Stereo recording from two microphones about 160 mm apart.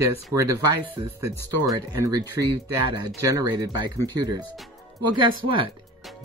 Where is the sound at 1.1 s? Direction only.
20° right (ahead or behind).